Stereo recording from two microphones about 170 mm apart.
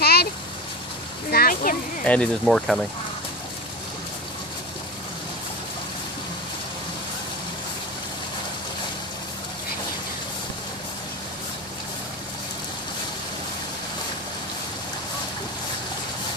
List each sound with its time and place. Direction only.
0.0 s vehicle: 70° left (ahead or behind)
1.3 s a sound: 60° left (ahead or behind)
2.0 s speech: 5° left (ahead or behind)